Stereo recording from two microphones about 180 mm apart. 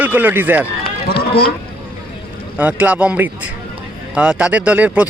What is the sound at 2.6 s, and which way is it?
Speech, 10° right (ahead or behind).